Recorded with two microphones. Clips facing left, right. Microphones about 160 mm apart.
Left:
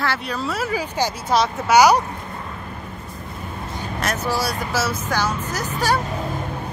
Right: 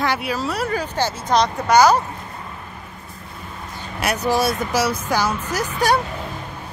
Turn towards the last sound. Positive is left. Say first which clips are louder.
# right 2 dB
turn(degrees=-15)  # may be behind; listen again after turning